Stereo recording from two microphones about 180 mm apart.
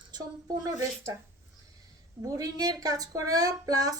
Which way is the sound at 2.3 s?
20° right (ahead or behind).